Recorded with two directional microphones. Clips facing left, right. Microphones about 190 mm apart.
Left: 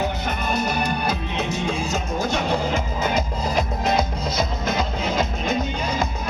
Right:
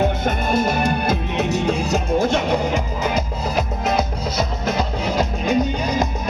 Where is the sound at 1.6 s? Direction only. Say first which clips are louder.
Right 5 dB; 35° right (ahead or behind); by 5.5 s 10° right (ahead or behind).